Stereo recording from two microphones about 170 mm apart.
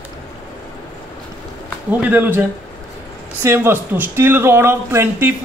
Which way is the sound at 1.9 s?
10° right (ahead or behind).